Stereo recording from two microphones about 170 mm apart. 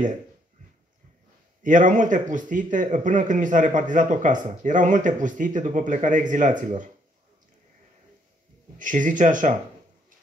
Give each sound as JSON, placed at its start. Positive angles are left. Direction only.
{"t": 1.6, "sound": "speech", "side_deg": -50}
{"t": 8.7, "sound": "speech", "side_deg": -50}